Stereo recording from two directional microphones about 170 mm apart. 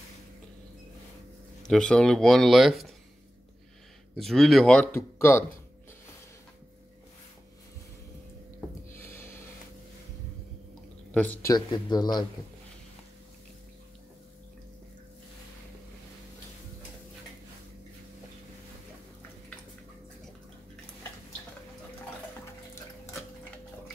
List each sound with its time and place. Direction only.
1.6 s speech: 5° left (ahead or behind)
4.2 s speech: centre (ahead or behind)
4.9 s speech: 15° left (ahead or behind)
8.9 s a sound: 15° left (ahead or behind)
11.1 s speech: 10° left (ahead or behind)
11.5 s speech: 25° left (ahead or behind)